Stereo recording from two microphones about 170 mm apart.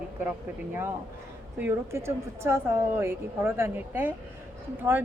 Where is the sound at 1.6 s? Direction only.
15° right (ahead or behind).